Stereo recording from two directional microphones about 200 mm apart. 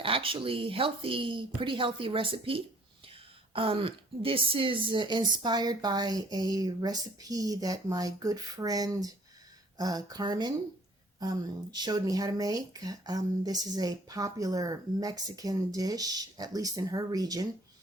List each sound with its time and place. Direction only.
0.0 s speech: 25° right (ahead or behind)